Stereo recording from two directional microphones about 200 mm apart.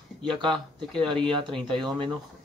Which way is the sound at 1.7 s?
25° right (ahead or behind).